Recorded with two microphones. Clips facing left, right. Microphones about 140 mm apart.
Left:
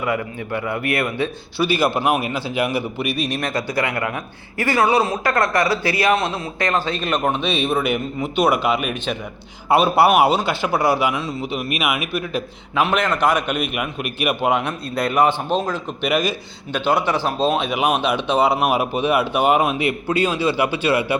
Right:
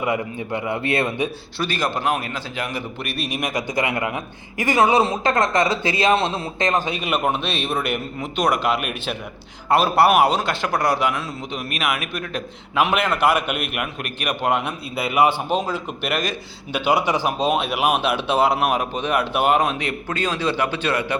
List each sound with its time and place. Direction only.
0.0 s a man's voice: 20° right (ahead or behind)
1.5 s a man's voice: 10° left (ahead or behind)
12.8 s speech: 5° right (ahead or behind)
14.6 s a man's voice: 5° right (ahead or behind)
16.7 s a man's voice: 10° right (ahead or behind)
17.6 s speech: 5° right (ahead or behind)